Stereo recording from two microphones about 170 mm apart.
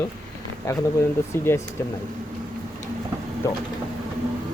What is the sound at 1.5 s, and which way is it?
Speech, 15° left (ahead or behind).